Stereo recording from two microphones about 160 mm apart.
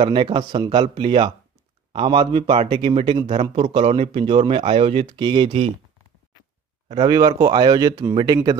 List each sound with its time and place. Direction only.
0.0 s a man's voice: 30° right (ahead or behind)
7.1 s speech: 20° right (ahead or behind)